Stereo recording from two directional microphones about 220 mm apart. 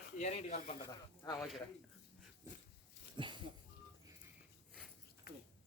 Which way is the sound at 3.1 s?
20° right (ahead or behind).